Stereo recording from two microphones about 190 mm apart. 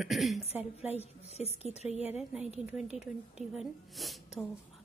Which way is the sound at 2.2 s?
5° right (ahead or behind).